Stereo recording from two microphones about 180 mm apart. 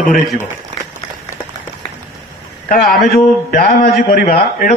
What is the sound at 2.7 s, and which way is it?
A man's voice, 50° left (ahead or behind).